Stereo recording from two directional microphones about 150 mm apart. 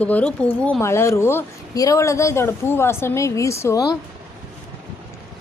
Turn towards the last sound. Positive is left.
turn(degrees=25)  # may be behind; listen again after turning